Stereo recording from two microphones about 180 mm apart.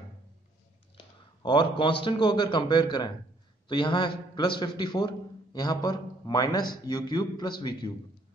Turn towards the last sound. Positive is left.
turn(degrees=25)  # may be behind; listen again after turning